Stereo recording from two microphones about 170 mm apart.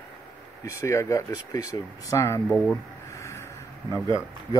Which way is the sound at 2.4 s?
5° left (ahead or behind).